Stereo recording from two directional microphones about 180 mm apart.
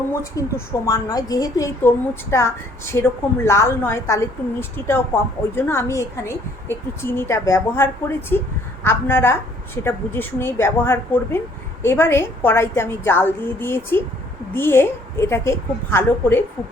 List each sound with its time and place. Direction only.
0.1 s speech: 15° left (ahead or behind)